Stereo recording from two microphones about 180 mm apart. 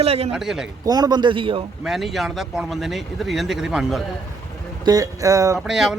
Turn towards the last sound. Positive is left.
turn(degrees=0)  # may be behind; listen again after turning